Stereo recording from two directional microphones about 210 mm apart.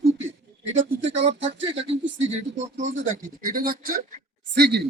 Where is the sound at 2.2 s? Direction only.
35° right (ahead or behind).